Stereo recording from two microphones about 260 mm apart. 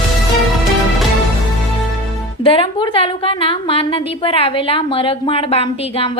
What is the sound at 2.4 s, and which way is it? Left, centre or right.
A woman's voice, left.